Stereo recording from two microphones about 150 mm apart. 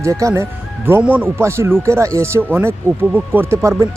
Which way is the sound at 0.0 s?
20° right (ahead or behind).